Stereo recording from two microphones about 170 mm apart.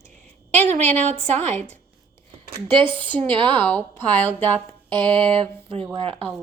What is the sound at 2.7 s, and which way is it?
Speech, 30° right (ahead or behind).